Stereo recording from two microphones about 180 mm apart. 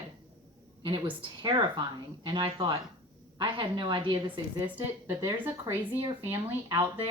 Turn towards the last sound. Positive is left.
turn(degrees=-15)  # may be behind; listen again after turning